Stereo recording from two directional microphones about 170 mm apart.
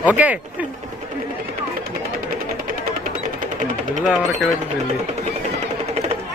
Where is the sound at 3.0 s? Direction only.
50° right (ahead or behind).